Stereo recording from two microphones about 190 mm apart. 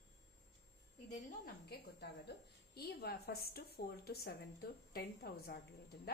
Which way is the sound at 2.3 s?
60° left (ahead or behind).